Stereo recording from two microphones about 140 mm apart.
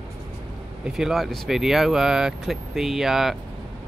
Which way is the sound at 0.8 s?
5° right (ahead or behind).